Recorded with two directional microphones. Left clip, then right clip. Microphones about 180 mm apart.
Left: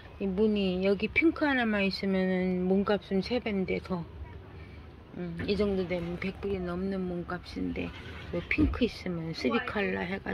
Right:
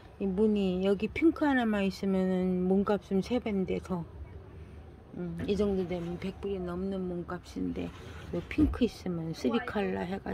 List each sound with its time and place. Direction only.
0.2 s speech: 30° right (ahead or behind)
5.2 s speech: 25° right (ahead or behind)
6.1 s speech: 10° right (ahead or behind)
8.5 s speech: 25° right (ahead or behind)